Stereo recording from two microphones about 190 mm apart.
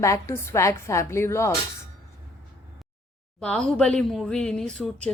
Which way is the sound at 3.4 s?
5° left (ahead or behind).